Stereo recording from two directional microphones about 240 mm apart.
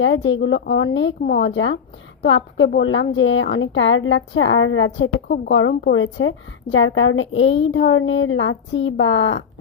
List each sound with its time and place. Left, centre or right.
0.0 s a woman's voice: left